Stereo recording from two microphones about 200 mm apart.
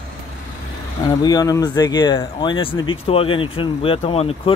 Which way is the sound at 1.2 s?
20° left (ahead or behind).